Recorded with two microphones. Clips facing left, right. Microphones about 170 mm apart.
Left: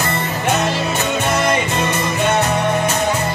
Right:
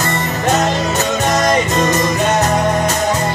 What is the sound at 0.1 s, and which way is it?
Music, 40° right (ahead or behind).